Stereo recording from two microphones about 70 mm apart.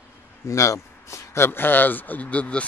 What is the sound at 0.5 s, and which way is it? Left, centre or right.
Speech, left.